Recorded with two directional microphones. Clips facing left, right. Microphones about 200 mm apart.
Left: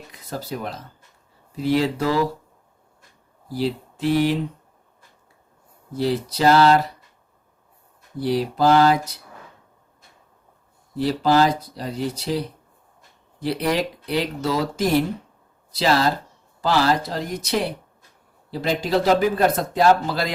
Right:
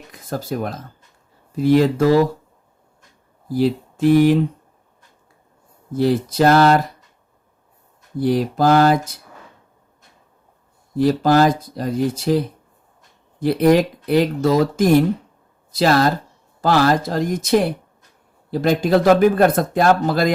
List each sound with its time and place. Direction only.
0.1 s speech: 50° right (ahead or behind)
3.5 s speech: 50° right (ahead or behind)
5.9 s speech: 50° right (ahead or behind)
8.2 s speech: 50° right (ahead or behind)
10.9 s speech: 50° right (ahead or behind)
13.4 s speech: 50° right (ahead or behind)